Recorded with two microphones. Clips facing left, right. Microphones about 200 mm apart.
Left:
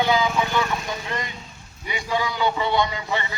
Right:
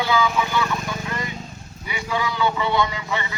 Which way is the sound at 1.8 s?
25° left (ahead or behind).